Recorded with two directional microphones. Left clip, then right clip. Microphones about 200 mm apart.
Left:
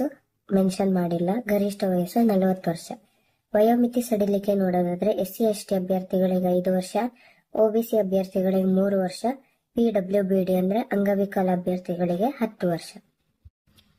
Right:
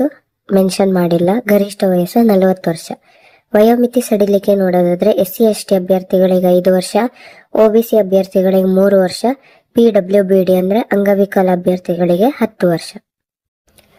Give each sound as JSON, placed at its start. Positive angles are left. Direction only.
{"t": 0.0, "sound": "speech", "side_deg": -40}